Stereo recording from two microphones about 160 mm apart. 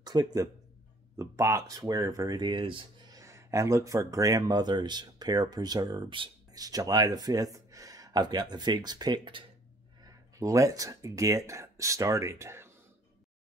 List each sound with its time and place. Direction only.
0.0 s speech: 25° right (ahead or behind)
3.2 s speech: 20° right (ahead or behind)